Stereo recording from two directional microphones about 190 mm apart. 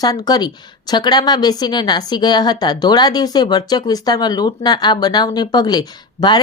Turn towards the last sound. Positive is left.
turn(degrees=20)  # may be behind; listen again after turning